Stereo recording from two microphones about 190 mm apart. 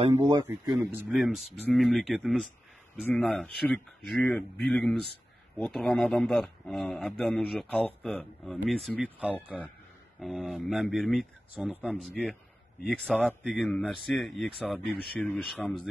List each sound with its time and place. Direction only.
0.1 s a man's voice: 15° right (ahead or behind)
0.7 s a man's voice: 5° right (ahead or behind)